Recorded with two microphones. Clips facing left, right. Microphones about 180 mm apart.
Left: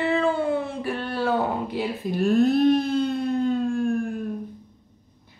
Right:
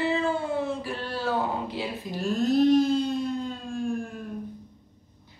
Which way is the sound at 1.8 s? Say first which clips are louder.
Left 6 dB; 60° left (ahead or behind).